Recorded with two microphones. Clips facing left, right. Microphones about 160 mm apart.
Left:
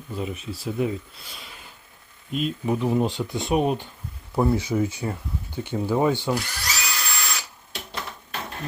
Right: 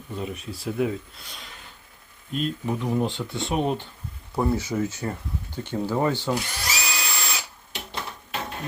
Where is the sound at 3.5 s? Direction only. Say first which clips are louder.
Left 3 dB; 10° left (ahead or behind).